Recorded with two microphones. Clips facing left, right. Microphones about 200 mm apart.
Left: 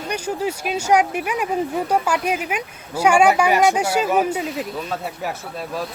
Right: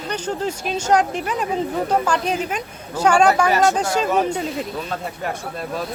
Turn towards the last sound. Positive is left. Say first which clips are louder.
# right 1 dB
turn(degrees=5)  # may be behind; listen again after turning